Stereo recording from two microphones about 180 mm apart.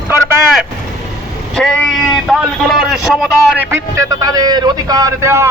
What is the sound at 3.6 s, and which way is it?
A man's voice, 15° right (ahead or behind).